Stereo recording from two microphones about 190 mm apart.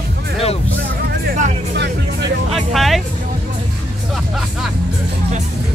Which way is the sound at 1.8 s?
60° right (ahead or behind).